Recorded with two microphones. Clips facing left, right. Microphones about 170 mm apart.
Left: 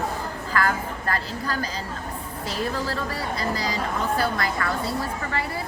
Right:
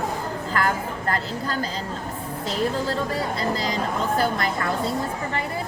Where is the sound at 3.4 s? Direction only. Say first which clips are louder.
Right 2 dB; 20° right (ahead or behind).